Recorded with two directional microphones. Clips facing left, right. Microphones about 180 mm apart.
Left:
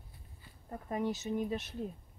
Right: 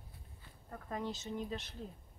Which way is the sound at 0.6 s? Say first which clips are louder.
Left 6 dB; 15° left (ahead or behind).